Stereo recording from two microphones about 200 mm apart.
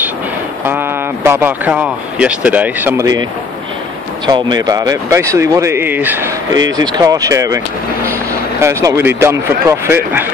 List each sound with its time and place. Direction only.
0.7 s speech: 10° right (ahead or behind)
4.5 s speech: 20° right (ahead or behind)